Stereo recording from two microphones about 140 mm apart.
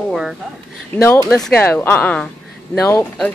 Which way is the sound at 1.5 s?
15° left (ahead or behind).